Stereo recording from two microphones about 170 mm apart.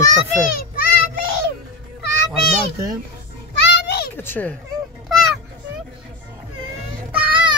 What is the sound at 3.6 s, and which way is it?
Children playing, 85° left.